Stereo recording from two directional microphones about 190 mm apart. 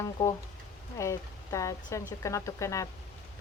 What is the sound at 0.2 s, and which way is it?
A woman's voice, 15° left (ahead or behind).